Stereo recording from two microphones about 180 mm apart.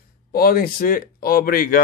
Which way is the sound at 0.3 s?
55° left (ahead or behind).